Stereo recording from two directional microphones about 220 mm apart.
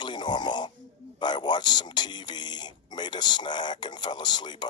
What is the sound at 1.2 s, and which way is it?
Speech, 20° left (ahead or behind).